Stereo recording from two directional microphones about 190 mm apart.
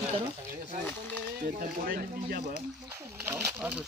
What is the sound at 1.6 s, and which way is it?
Speech, 50° right (ahead or behind).